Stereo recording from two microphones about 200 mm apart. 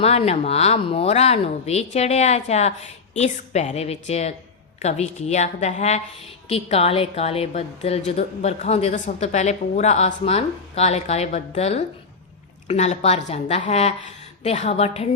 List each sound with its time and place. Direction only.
0.0 s a woman's voice: 30° left (ahead or behind)